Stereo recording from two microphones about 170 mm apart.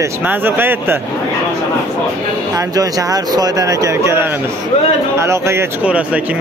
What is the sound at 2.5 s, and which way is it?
A man's voice, 20° right (ahead or behind).